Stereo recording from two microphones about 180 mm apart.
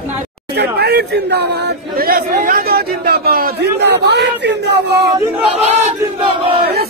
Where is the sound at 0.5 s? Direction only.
65° right (ahead or behind).